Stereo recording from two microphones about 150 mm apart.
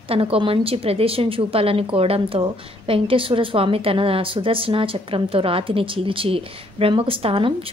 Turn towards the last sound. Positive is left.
turn(degrees=-40)  # may be behind; listen again after turning